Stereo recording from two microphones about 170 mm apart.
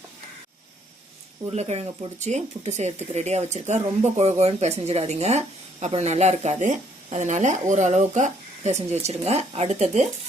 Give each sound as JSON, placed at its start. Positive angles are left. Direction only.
{"t": 1.5, "sound": "speech", "side_deg": -40}